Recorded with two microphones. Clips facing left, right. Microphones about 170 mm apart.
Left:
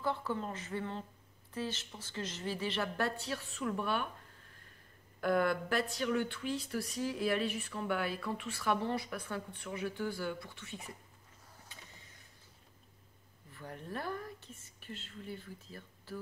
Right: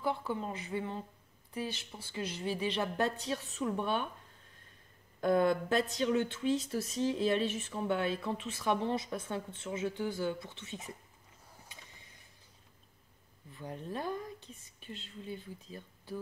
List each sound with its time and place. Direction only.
0.0 s speech: 15° right (ahead or behind)
5.2 s speech: 20° right (ahead or behind)
13.5 s speech: 20° right (ahead or behind)